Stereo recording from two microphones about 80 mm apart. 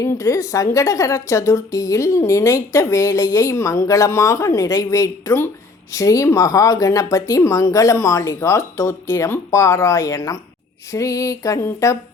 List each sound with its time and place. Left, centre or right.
0.0 s a woman's voice: left